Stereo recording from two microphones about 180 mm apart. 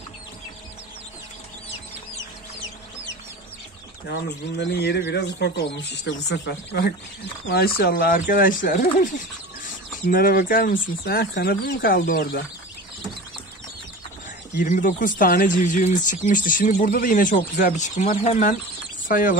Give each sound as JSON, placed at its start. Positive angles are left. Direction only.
{"t": 4.6, "sound": "speech", "side_deg": 70}
{"t": 7.4, "sound": "speech", "side_deg": 60}
{"t": 14.6, "sound": "speech", "side_deg": 45}